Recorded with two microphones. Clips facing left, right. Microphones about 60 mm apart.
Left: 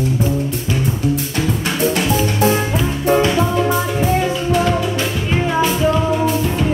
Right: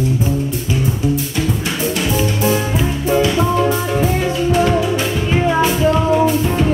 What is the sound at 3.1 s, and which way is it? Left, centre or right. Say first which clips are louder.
Music: left 2 dB; left.